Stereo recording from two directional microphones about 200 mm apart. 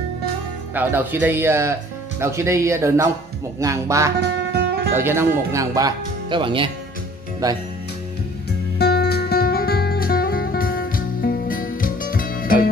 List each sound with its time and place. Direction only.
0.7 s speech: 10° right (ahead or behind)
4.2 s music: 55° right (ahead or behind)
4.9 s speech: 10° right (ahead or behind)
8.7 s music: 55° left (ahead or behind)